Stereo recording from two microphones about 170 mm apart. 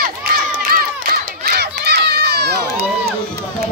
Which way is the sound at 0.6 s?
60° right (ahead or behind).